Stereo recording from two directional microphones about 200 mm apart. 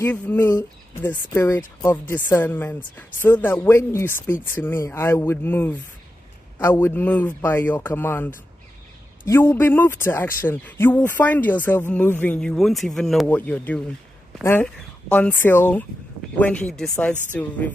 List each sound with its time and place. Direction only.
0.0 s speech: 10° left (ahead or behind)
9.3 s speech: 10° left (ahead or behind)